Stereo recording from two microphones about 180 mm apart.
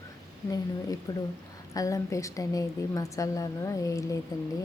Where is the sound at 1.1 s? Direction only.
20° left (ahead or behind).